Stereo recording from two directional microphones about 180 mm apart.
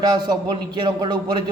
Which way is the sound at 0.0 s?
20° right (ahead or behind).